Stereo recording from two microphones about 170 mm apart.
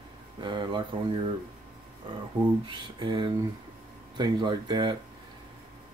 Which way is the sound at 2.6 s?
25° right (ahead or behind).